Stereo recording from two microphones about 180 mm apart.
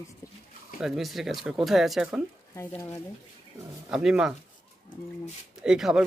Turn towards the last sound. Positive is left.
turn(degrees=-5)  # may be behind; listen again after turning